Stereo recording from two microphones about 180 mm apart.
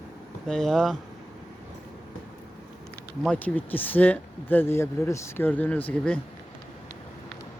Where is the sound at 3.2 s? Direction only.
10° left (ahead or behind).